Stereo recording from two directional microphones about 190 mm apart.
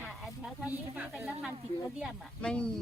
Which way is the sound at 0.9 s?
10° right (ahead or behind).